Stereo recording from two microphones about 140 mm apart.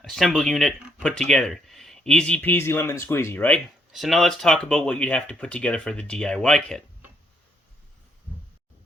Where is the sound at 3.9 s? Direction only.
Centre (ahead or behind).